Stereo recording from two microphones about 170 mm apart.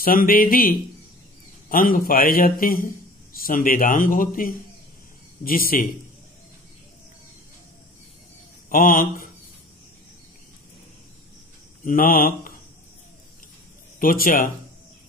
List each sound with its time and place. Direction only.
0.0 s speech: 55° left (ahead or behind)
8.6 s speech: 55° left (ahead or behind)
11.8 s speech: 55° left (ahead or behind)
13.9 s speech: 55° left (ahead or behind)